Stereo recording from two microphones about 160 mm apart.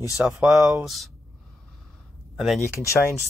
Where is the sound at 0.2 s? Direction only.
Centre (ahead or behind).